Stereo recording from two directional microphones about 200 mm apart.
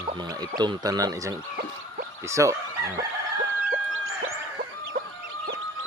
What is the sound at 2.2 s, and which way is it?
Fowl, 15° right (ahead or behind).